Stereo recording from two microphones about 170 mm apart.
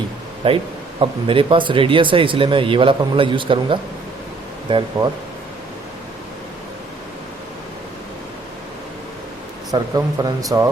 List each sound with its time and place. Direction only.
0.4 s speech: 30° right (ahead or behind)
9.7 s speech: 20° right (ahead or behind)